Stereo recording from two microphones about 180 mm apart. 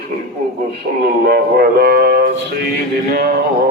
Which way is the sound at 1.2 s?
60° right (ahead or behind).